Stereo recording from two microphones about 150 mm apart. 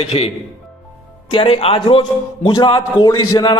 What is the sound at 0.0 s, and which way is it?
Speech, 40° left (ahead or behind).